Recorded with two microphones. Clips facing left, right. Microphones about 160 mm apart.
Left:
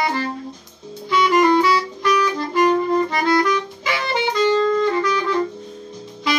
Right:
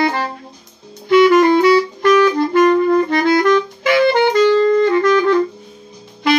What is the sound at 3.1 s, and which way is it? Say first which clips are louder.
Saxophone: right 5 dB; 60° right (ahead or behind).